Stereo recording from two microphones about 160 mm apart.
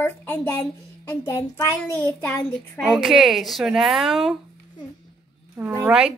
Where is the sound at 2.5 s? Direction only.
Centre (ahead or behind).